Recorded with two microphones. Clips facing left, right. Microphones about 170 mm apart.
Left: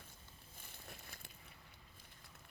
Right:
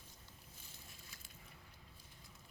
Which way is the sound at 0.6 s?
60° left (ahead or behind).